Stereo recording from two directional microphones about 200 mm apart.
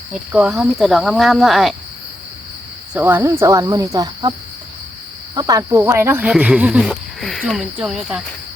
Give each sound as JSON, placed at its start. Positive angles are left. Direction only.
{"t": 0.1, "sound": "speech", "side_deg": -5}
{"t": 2.9, "sound": "speech", "side_deg": -10}